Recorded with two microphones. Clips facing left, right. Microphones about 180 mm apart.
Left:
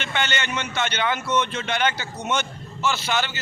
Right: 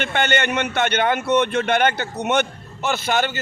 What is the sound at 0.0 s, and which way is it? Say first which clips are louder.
A man's voice: right 6 dB; 55° right (ahead or behind).